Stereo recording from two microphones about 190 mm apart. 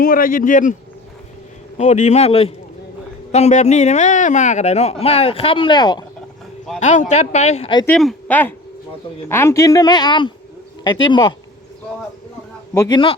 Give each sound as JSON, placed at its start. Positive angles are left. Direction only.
{"t": 0.0, "sound": "speech", "side_deg": 50}
{"t": 1.8, "sound": "speech", "side_deg": 40}
{"t": 6.7, "sound": "speech", "side_deg": 40}
{"t": 7.9, "sound": "a woman's voice", "side_deg": 5}
{"t": 12.7, "sound": "speech", "side_deg": 15}